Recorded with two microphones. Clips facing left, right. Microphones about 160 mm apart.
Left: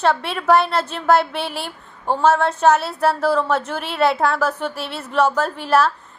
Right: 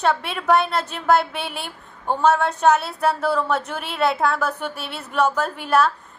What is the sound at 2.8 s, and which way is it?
A woman's voice, centre (ahead or behind).